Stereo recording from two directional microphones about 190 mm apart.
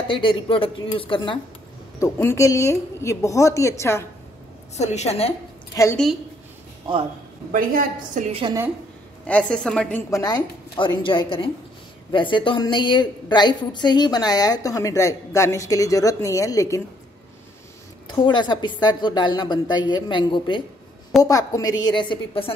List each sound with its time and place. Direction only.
0.1 s a woman's voice: 25° left (ahead or behind)
2.1 s a woman's voice: 15° left (ahead or behind)
4.7 s a woman's voice: 35° left (ahead or behind)
5.7 s a woman's voice: 15° left (ahead or behind)
7.5 s a woman's voice: 45° right (ahead or behind)
9.2 s a woman's voice: 5° left (ahead or behind)
10.2 s a woman's voice: 25° left (ahead or behind)
18.0 s a woman's voice: 20° left (ahead or behind)